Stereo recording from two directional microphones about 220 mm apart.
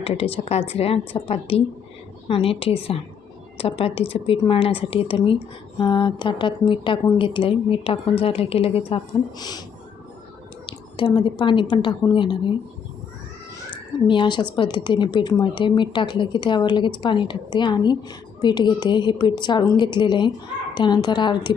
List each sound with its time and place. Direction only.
0.0 s speech: 25° left (ahead or behind)
10.7 s speech: 20° left (ahead or behind)
14.1 s speech: 20° left (ahead or behind)